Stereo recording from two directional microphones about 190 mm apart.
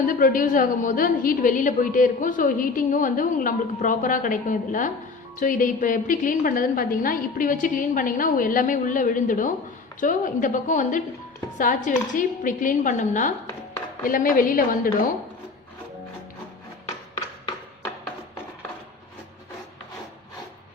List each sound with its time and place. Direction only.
0.1 s a woman's voice: 45° left (ahead or behind)